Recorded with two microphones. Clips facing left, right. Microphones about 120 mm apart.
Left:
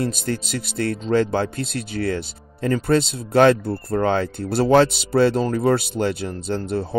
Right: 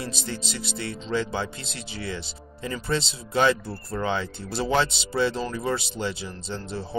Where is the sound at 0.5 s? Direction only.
55° left (ahead or behind).